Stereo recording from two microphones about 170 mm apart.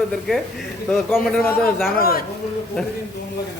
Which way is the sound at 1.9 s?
60° left (ahead or behind).